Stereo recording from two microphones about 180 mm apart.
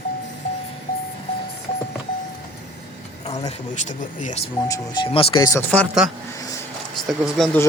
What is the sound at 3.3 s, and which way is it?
Speech, 40° left (ahead or behind).